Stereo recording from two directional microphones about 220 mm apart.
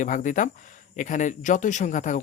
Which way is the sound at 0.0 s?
35° left (ahead or behind).